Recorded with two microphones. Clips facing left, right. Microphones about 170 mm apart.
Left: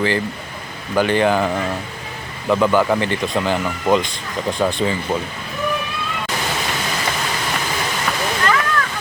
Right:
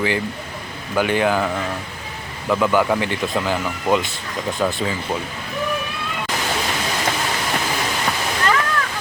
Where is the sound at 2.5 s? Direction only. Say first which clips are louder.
Left 2 dB; centre (ahead or behind).